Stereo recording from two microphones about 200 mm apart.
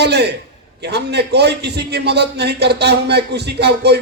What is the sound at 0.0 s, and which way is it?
A man's voice, 55° right (ahead or behind).